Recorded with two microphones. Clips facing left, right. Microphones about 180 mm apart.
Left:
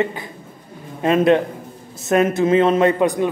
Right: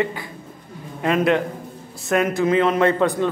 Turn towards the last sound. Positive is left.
turn(degrees=15)  # may be behind; listen again after turning